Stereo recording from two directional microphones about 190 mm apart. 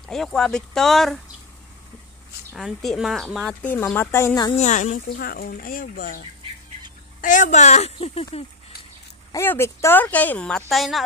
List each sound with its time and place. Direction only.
0.1 s speech: centre (ahead or behind)
2.5 s speech: centre (ahead or behind)
3.6 s speech: 10° left (ahead or behind)
4.6 s speech: 40° left (ahead or behind)
9.3 s speech: 15° left (ahead or behind)